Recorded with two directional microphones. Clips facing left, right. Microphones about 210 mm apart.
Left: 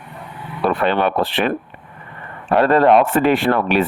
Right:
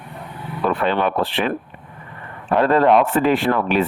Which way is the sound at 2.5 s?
70° left (ahead or behind).